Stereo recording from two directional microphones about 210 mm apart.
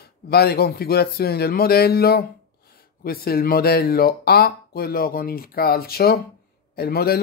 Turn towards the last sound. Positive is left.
turn(degrees=45)  # may be behind; listen again after turning